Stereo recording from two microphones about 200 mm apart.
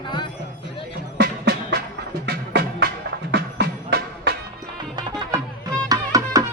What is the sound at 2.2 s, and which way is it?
Music, 55° right (ahead or behind).